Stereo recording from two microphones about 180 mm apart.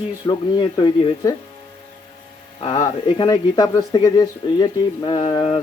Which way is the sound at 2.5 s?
35° left (ahead or behind).